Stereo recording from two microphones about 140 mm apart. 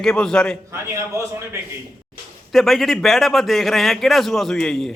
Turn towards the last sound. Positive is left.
turn(degrees=5)  # may be behind; listen again after turning